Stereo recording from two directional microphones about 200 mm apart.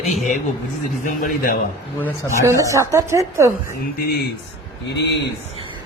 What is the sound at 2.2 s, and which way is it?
A woman's voice, 15° right (ahead or behind).